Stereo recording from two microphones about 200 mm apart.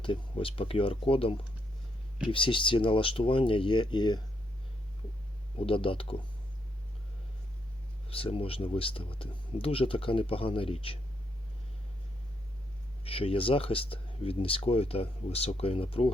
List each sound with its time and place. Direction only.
0.0 s speech: 25° left (ahead or behind)
5.5 s speech: 25° left (ahead or behind)
8.1 s speech: 30° left (ahead or behind)
13.1 s speech: 30° left (ahead or behind)